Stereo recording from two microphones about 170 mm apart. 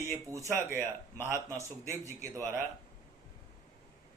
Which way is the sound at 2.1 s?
15° right (ahead or behind).